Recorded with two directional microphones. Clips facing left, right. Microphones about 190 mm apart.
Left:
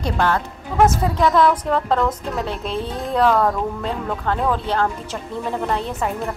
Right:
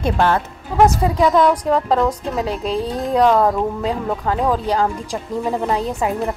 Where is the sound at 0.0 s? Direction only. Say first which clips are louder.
Right 3 dB; 20° right (ahead or behind).